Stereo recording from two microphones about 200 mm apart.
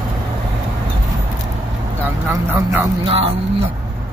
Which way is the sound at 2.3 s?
10° right (ahead or behind).